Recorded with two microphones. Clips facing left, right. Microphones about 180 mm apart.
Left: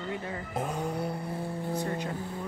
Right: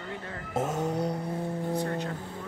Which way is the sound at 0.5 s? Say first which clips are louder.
Right 4 dB; 20° right (ahead or behind).